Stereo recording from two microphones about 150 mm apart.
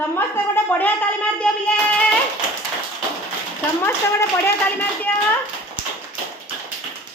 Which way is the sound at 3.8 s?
15° left (ahead or behind).